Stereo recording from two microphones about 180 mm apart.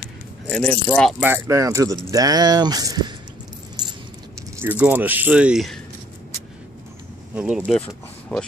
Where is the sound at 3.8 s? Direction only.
25° right (ahead or behind).